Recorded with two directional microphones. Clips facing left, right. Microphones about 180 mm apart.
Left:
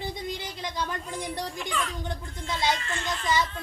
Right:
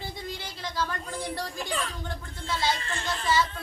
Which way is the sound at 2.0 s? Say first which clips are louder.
Left 2 dB; 20° left (ahead or behind).